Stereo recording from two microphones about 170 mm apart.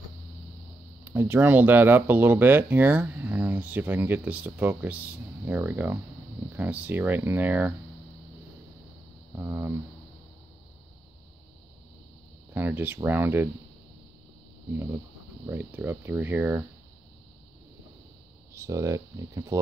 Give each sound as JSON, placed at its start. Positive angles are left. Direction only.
{"t": 1.0, "sound": "speech", "side_deg": -10}
{"t": 9.4, "sound": "speech", "side_deg": -15}
{"t": 12.5, "sound": "speech", "side_deg": -10}
{"t": 15.4, "sound": "speech", "side_deg": -10}
{"t": 18.5, "sound": "speech", "side_deg": -15}